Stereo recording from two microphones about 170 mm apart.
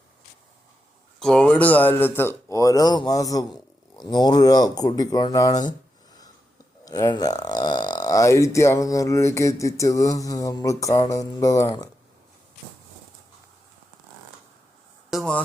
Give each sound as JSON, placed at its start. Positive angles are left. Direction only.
{"t": 1.2, "sound": "speech", "side_deg": 5}
{"t": 6.8, "sound": "speech", "side_deg": 20}
{"t": 15.1, "sound": "a sound", "side_deg": -5}